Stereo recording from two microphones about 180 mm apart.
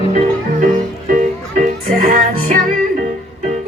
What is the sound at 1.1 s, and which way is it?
Music, 50° right (ahead or behind).